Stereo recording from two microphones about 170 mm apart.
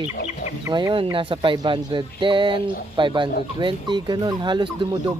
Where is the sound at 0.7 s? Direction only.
25° right (ahead or behind).